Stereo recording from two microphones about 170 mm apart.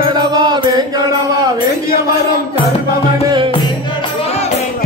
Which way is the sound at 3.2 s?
30° right (ahead or behind).